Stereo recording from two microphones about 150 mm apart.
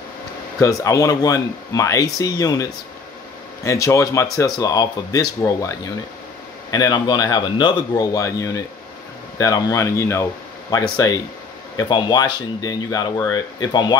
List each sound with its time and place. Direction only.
0.6 s speech: 20° left (ahead or behind)